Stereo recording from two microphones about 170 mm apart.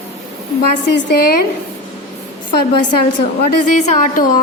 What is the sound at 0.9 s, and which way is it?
Speech, 70° left (ahead or behind).